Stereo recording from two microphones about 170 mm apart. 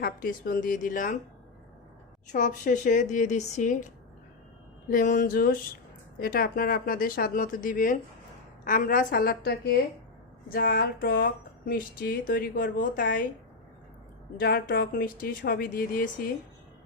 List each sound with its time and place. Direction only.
0.0 s speech: 55° left (ahead or behind)
2.2 s speech: 50° left (ahead or behind)
4.9 s speech: 55° left (ahead or behind)
14.3 s speech: 65° left (ahead or behind)